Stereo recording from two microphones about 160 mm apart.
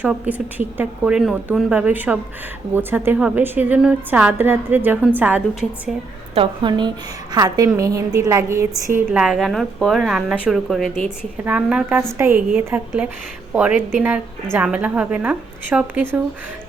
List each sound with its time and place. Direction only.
0.0 s a woman's voice: 10° right (ahead or behind)
6.3 s a woman's voice: 30° right (ahead or behind)
9.1 s a woman's voice: 5° right (ahead or behind)